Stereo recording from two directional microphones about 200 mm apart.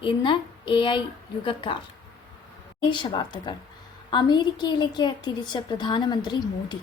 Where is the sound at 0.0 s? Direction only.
25° left (ahead or behind).